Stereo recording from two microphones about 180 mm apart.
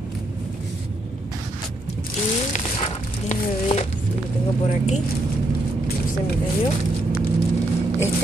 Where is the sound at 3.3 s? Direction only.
35° left (ahead or behind).